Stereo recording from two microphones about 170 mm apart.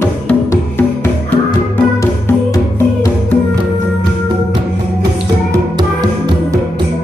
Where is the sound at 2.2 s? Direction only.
15° left (ahead or behind).